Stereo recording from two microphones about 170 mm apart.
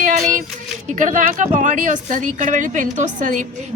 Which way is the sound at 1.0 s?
50° right (ahead or behind).